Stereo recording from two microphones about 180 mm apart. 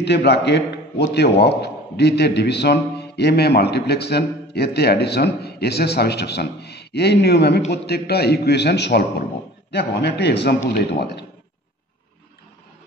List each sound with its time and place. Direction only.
0.0 s a man's voice: 70° left (ahead or behind)